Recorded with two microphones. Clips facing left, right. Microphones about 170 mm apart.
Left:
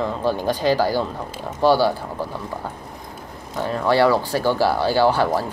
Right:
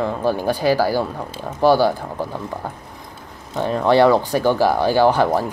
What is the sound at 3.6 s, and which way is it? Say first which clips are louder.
Speech: right 3 dB; 20° right (ahead or behind).